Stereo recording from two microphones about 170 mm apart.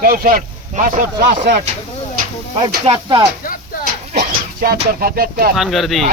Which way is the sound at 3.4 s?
60° left (ahead or behind).